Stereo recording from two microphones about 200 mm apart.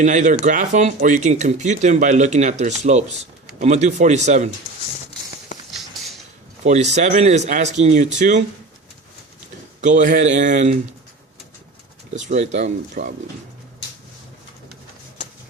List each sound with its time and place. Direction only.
0.0 s speech: 40° right (ahead or behind)
5.7 s a sound: centre (ahead or behind)
6.7 s speech: 35° right (ahead or behind)
9.8 s speech: 40° right (ahead or behind)
12.1 s speech: 35° right (ahead or behind)